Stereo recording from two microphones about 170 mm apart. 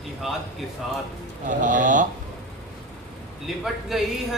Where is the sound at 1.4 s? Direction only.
50° right (ahead or behind).